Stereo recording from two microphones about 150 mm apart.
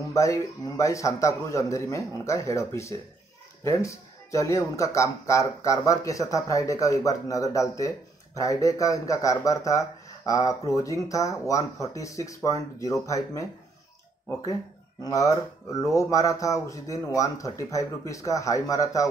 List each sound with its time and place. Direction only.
0.1 s speech: 20° left (ahead or behind)
15.0 s speech: 20° left (ahead or behind)